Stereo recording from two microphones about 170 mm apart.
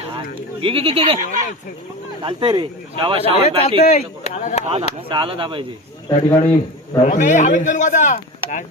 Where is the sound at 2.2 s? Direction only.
30° right (ahead or behind).